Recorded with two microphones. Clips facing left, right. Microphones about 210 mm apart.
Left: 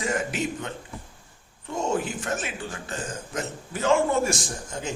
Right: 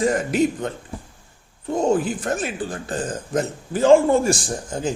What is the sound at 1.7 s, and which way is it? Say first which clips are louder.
Speech: right 7 dB; 35° right (ahead or behind).